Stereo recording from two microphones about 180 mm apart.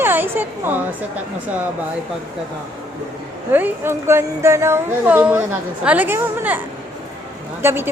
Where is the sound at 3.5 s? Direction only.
10° right (ahead or behind).